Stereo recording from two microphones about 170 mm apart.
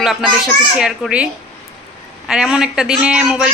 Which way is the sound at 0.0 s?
Centre (ahead or behind).